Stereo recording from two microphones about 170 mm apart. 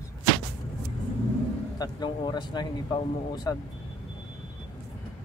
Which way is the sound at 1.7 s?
25° left (ahead or behind).